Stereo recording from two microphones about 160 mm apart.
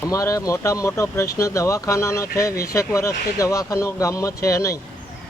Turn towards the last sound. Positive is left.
turn(degrees=20)  # may be behind; listen again after turning